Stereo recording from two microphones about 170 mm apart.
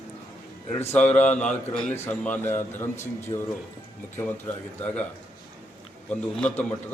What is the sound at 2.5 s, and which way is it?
Speech, 45° left (ahead or behind).